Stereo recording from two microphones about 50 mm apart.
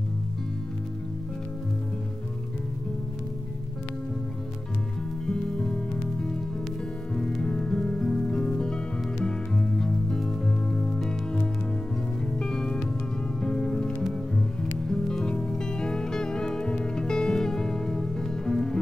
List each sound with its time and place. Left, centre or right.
5.2 s music: centre
7.4 s music: centre
12.4 s music: centre